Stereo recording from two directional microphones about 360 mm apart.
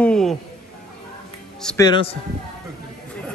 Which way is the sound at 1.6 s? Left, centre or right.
Centre.